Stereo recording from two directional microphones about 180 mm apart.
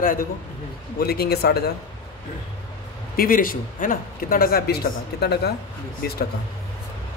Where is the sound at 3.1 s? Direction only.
50° left (ahead or behind).